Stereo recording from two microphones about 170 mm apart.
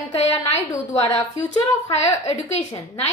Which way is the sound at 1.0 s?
20° left (ahead or behind).